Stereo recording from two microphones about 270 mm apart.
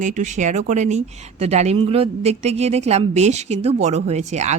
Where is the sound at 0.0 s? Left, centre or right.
Right.